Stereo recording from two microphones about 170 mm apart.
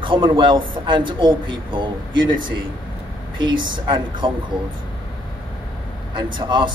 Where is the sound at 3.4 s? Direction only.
30° right (ahead or behind).